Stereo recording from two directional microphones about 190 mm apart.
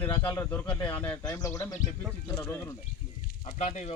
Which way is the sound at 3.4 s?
35° left (ahead or behind).